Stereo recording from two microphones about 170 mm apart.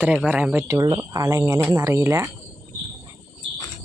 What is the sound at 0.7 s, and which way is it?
Speech, 20° right (ahead or behind).